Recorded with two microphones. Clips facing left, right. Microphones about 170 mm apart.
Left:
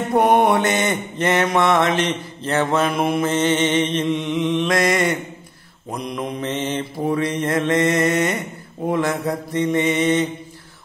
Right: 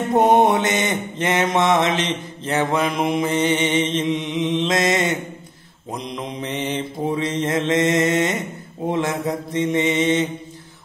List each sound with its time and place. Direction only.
0.1 s mantra: 25° right (ahead or behind)
9.5 s mantra: 20° right (ahead or behind)